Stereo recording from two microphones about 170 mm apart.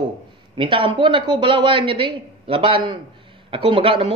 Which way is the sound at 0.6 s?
30° right (ahead or behind).